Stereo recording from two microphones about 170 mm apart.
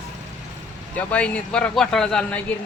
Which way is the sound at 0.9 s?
10° left (ahead or behind).